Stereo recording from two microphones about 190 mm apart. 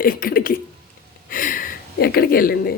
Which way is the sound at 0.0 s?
50° left (ahead or behind).